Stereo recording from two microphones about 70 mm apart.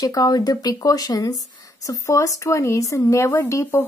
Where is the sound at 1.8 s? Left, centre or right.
Left.